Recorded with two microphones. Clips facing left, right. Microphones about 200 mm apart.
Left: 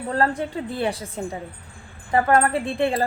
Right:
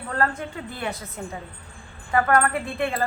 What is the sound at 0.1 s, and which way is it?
A woman's voice, 30° left (ahead or behind).